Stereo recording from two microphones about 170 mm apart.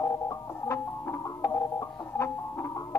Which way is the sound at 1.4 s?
15° left (ahead or behind).